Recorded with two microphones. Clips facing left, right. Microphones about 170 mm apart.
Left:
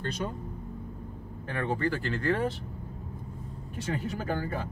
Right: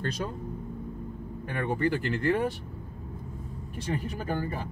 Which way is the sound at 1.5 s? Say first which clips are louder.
Right 2 dB; 15° right (ahead or behind).